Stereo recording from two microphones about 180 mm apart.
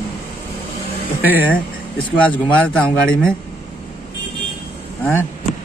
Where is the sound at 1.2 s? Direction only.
10° right (ahead or behind).